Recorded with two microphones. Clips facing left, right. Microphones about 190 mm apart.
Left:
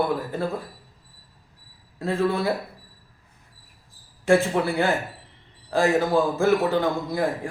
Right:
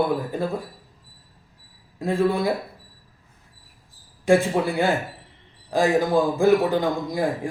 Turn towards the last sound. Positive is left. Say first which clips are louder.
# even
turn(degrees=-15)  # may be behind; listen again after turning